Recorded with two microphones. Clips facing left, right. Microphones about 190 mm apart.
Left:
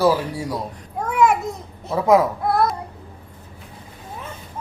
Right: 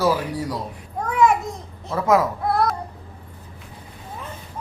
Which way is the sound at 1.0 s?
Centre (ahead or behind).